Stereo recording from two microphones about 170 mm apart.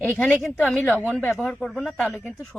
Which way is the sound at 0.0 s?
10° left (ahead or behind).